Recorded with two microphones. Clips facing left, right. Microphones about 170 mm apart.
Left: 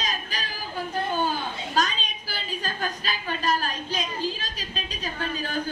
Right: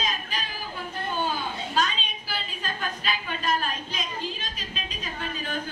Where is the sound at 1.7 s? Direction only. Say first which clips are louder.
Left 2 dB; 40° left (ahead or behind).